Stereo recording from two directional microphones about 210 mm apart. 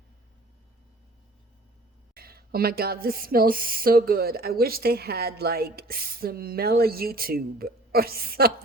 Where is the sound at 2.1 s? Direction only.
45° right (ahead or behind).